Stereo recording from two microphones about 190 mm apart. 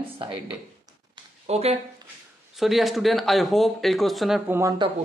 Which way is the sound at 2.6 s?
Centre (ahead or behind).